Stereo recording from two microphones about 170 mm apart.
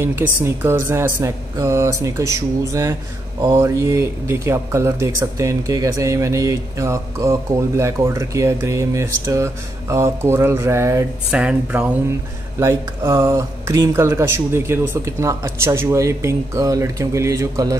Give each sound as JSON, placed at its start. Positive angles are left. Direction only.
{"t": 0.0, "sound": "speech", "side_deg": -15}
{"t": 11.2, "sound": "speech", "side_deg": -5}
{"t": 12.5, "sound": "speech", "side_deg": -15}